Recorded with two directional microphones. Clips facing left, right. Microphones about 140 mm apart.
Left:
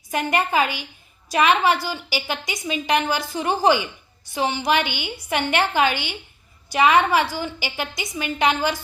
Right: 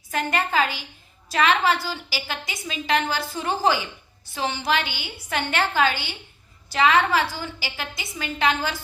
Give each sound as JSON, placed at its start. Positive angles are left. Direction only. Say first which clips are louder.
{"t": 0.1, "sound": "a woman's voice", "louder": "left 3 dB", "side_deg": 15}